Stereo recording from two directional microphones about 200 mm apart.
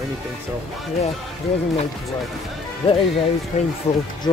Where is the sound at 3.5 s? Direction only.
35° left (ahead or behind).